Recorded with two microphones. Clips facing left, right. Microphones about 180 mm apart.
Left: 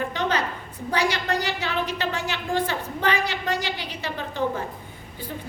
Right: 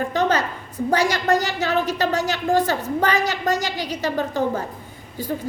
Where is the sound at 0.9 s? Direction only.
45° right (ahead or behind).